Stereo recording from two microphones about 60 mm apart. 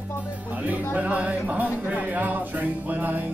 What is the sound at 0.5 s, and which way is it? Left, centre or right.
Music, right.